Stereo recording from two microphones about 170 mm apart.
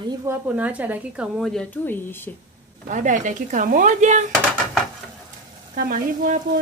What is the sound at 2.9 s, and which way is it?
Speech, 50° right (ahead or behind).